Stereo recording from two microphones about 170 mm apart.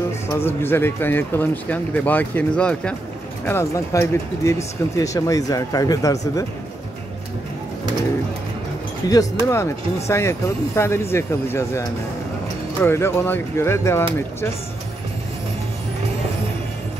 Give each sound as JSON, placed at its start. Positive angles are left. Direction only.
{"t": 0.3, "sound": "speech", "side_deg": 15}
{"t": 9.1, "sound": "speech", "side_deg": 20}
{"t": 12.8, "sound": "speech", "side_deg": 15}